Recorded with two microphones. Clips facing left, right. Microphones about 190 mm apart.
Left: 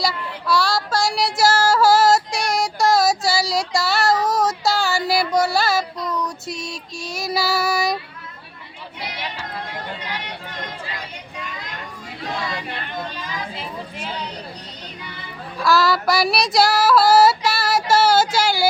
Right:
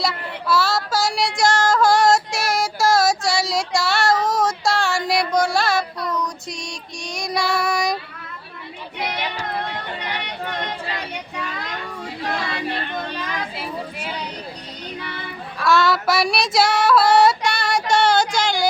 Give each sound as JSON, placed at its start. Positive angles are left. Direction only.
{"t": 0.0, "sound": "child singing", "side_deg": 0}
{"t": 6.1, "sound": "female singing", "side_deg": 5}
{"t": 10.0, "sound": "a sound", "side_deg": -65}
{"t": 11.1, "sound": "child singing", "side_deg": -70}
{"t": 13.1, "sound": "children playing", "side_deg": -65}
{"t": 15.0, "sound": "music", "side_deg": -65}
{"t": 15.6, "sound": "female singing", "side_deg": 0}